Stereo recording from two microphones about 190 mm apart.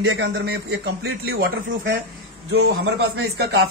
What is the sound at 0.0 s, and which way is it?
A man's voice, 90° right.